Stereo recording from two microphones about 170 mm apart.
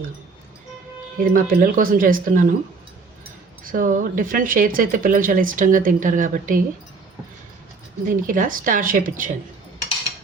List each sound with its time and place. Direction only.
1.2 s speech: 55° right (ahead or behind)
3.6 s speech: 55° right (ahead or behind)
8.0 s speech: 50° right (ahead or behind)